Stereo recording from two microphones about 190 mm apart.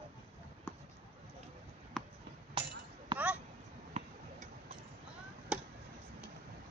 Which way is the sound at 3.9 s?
30° right (ahead or behind).